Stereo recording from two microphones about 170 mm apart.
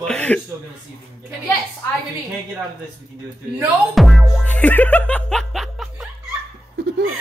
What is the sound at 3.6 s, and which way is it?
Music, centre (ahead or behind).